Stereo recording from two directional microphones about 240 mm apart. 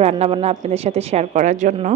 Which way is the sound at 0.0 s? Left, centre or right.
Right.